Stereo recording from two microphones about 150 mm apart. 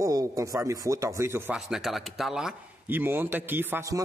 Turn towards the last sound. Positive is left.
turn(degrees=-20)  # may be behind; listen again after turning